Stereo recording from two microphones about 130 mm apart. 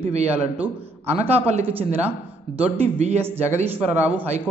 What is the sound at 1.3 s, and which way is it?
Speech, 55° right (ahead or behind).